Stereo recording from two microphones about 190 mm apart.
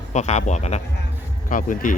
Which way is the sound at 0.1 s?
35° left (ahead or behind).